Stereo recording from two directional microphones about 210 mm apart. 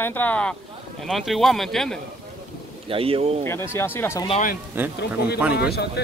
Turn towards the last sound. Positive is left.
turn(degrees=50)  # may be behind; listen again after turning